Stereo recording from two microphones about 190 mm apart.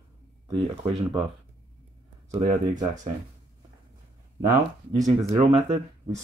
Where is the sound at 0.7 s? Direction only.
30° right (ahead or behind).